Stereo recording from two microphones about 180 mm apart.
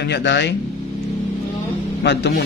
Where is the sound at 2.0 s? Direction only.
70° left (ahead or behind).